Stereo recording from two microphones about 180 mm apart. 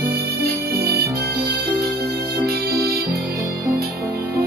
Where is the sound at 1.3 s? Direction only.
60° right (ahead or behind).